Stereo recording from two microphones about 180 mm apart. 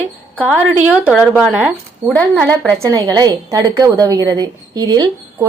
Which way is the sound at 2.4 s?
10° left (ahead or behind).